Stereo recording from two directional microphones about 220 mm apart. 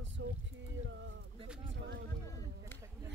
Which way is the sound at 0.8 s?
55° right (ahead or behind).